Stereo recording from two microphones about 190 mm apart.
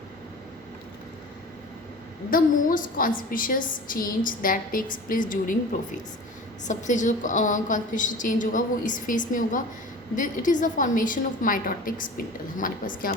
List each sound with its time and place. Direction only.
2.3 s a woman's voice: 45° left (ahead or behind)